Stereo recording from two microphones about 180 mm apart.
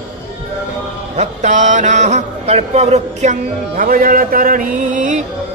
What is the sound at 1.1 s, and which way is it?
A man's voice, 40° right (ahead or behind).